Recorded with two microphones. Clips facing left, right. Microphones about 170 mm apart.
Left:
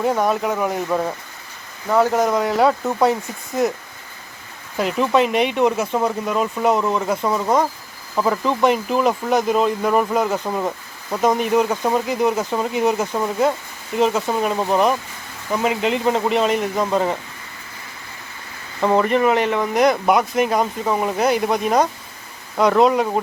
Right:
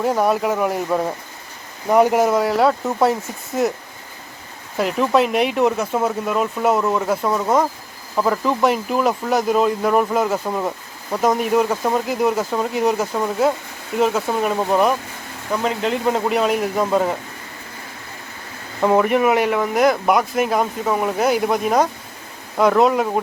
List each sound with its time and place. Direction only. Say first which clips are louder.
0.0 s speech: right 1 dB; centre (ahead or behind)
1.9 s speech: right 2 dB; 15° right (ahead or behind)
4.8 s speech: even; centre (ahead or behind)
18.8 s speech: right 1 dB; 10° right (ahead or behind)